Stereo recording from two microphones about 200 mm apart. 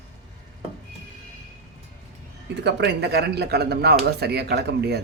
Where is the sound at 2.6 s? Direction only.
55° right (ahead or behind).